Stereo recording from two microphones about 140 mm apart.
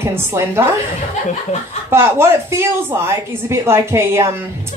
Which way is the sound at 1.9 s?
20° right (ahead or behind).